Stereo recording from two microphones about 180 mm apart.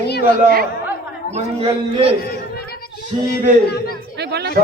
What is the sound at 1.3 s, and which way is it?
Speech, 35° right (ahead or behind).